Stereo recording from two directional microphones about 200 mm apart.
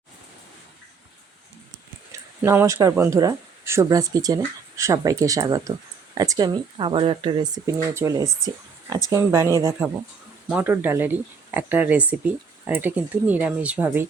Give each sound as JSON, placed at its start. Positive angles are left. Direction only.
{"t": 2.1, "sound": "speech", "side_deg": -15}
{"t": 10.5, "sound": "speech", "side_deg": -10}